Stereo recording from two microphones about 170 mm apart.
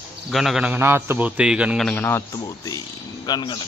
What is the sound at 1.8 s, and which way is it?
A man's voice, 10° left (ahead or behind).